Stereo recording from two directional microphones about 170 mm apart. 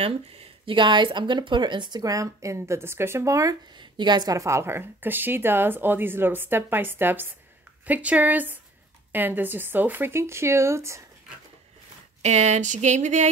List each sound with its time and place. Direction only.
0.0 s speech: 35° right (ahead or behind); by 11.0 s 15° right (ahead or behind)
12.2 s speech: 40° right (ahead or behind)